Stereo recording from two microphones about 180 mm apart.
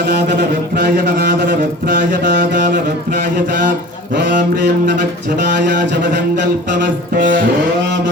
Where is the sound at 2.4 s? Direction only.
50° right (ahead or behind).